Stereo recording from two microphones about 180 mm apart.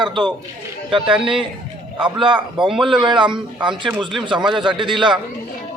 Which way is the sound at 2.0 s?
25° right (ahead or behind).